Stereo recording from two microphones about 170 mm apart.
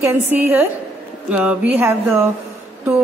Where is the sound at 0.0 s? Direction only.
10° right (ahead or behind).